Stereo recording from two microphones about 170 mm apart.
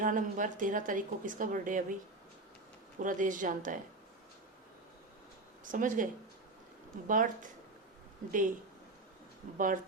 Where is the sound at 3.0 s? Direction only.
50° right (ahead or behind).